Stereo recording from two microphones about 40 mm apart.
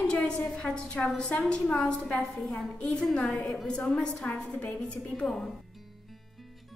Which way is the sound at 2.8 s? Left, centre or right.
Left.